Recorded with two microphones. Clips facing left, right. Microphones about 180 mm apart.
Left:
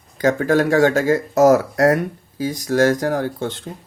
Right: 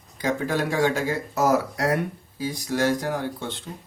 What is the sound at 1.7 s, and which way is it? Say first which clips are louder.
Speech: left 8 dB; 45° left (ahead or behind).